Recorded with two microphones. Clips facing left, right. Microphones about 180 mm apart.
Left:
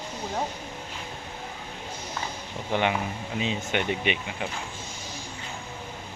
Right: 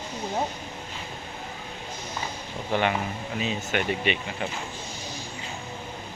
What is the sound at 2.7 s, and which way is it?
Speech, 15° left (ahead or behind).